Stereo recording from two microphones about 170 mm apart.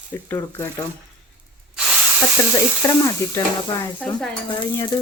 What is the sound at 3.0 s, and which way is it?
Speech, 20° left (ahead or behind).